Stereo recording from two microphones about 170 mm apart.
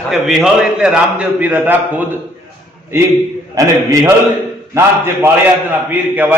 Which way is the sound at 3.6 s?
20° right (ahead or behind).